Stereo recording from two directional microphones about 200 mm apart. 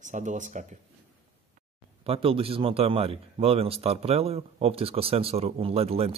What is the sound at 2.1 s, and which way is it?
Speech, 30° right (ahead or behind).